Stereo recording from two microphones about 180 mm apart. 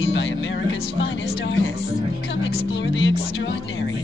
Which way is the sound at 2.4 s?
85° left.